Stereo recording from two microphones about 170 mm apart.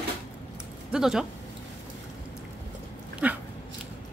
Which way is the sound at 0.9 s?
5° right (ahead or behind).